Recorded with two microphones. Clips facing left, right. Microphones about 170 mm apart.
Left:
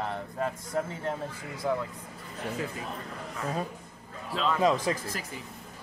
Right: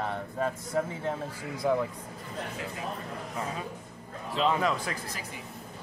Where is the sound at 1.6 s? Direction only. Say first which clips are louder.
Right 3 dB; 15° right (ahead or behind).